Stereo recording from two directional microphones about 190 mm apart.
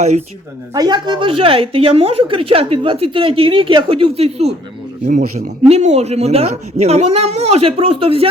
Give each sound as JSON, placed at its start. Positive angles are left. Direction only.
{"t": 0.7, "sound": "a woman's voice", "side_deg": -20}
{"t": 5.6, "sound": "a woman's voice", "side_deg": -35}